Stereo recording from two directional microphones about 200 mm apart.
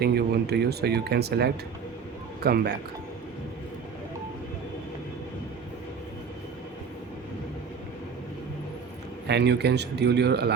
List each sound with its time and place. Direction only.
0.0 s speech: 55° right (ahead or behind)
9.2 s speech: 55° right (ahead or behind)